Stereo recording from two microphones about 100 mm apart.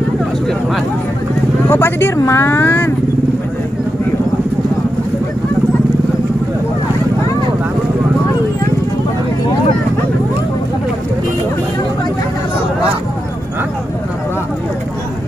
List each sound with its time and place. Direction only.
1.7 s speech: 25° left (ahead or behind)